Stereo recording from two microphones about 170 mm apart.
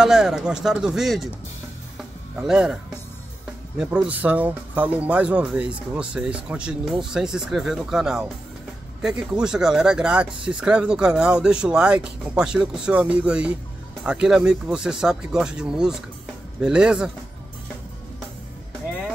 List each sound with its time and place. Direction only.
0.0 s speech: 5° right (ahead or behind)
2.4 s speech: 5° right (ahead or behind)